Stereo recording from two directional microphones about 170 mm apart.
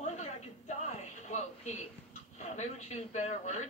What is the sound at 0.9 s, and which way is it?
Television, 40° left (ahead or behind).